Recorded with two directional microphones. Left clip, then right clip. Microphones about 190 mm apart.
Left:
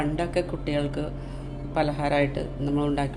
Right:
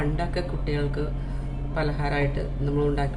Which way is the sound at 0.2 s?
35° left (ahead or behind).